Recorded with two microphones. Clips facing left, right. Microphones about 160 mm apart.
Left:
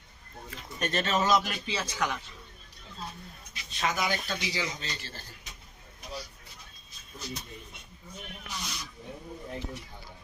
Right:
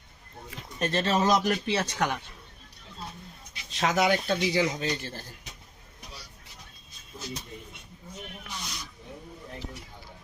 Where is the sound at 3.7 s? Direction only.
75° right (ahead or behind); by 5.2 s 55° right (ahead or behind).